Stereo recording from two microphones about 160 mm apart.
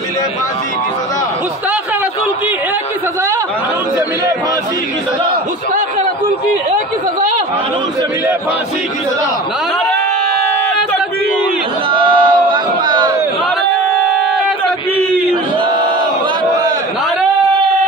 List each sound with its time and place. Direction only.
11.9 s crowd: 30° right (ahead or behind)